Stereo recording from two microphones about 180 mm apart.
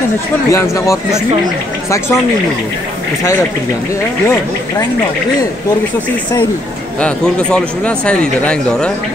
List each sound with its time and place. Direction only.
0.5 s speech: 15° left (ahead or behind)
7.0 s speech: 5° left (ahead or behind)